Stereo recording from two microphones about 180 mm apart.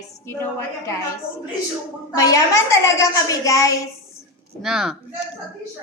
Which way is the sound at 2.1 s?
20° left (ahead or behind).